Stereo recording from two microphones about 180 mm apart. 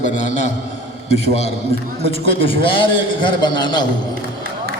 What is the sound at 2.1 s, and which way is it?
A man's voice, 30° left (ahead or behind).